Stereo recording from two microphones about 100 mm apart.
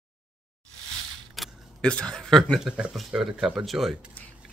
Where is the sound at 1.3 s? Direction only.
5° left (ahead or behind).